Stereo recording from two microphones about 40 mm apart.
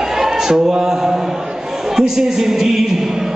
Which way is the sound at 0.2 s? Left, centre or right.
Centre.